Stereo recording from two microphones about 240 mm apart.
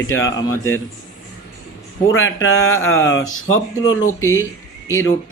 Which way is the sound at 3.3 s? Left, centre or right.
Left.